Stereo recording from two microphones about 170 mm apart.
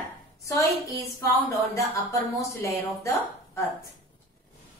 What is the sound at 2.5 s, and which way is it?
A woman's voice, 15° left (ahead or behind).